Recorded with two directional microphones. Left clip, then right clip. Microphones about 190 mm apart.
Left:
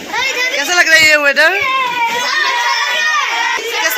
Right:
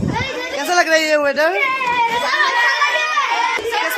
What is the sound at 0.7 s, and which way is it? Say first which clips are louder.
Speech: left 5 dB; 25° right (ahead or behind).